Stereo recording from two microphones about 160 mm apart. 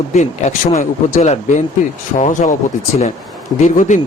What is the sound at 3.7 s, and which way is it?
Speech, 50° left (ahead or behind).